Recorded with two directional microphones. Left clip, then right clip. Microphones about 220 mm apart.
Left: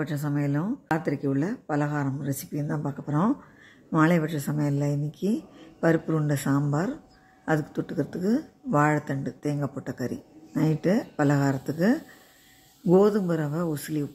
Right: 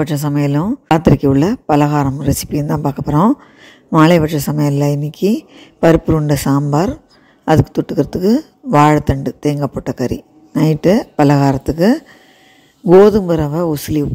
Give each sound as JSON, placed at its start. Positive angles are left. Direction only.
{"t": 0.0, "sound": "speech", "side_deg": -30}